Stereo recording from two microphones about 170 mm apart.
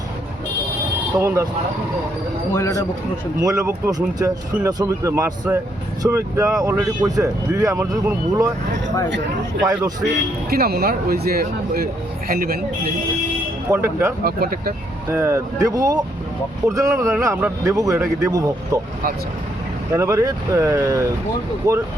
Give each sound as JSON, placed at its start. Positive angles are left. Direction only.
{"t": 1.2, "sound": "speech", "side_deg": -15}
{"t": 2.5, "sound": "speech", "side_deg": 15}
{"t": 3.4, "sound": "speech", "side_deg": -20}
{"t": 10.5, "sound": "speech", "side_deg": -65}
{"t": 13.7, "sound": "speech", "side_deg": -15}
{"t": 14.3, "sound": "speech", "side_deg": -60}
{"t": 15.1, "sound": "a man's voice", "side_deg": -15}
{"t": 19.9, "sound": "a man's voice", "side_deg": -15}